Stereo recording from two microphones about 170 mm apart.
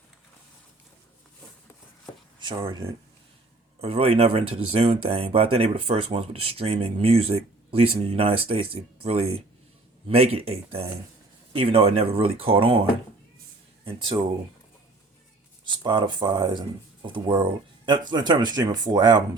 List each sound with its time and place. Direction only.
2.4 s speech: 30° right (ahead or behind)
13.8 s speech: 30° right (ahead or behind)
15.6 s speech: 25° right (ahead or behind)